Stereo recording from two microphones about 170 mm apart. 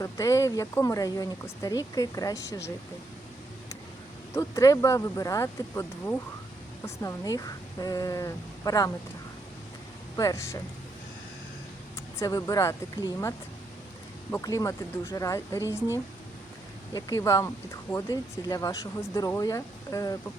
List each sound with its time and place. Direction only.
0.0 s speech: 20° left (ahead or behind)
4.4 s speech: 20° left (ahead or behind)
10.2 s speech: 20° left (ahead or behind)
12.2 s speech: 20° left (ahead or behind)
16.9 s speech: 20° left (ahead or behind)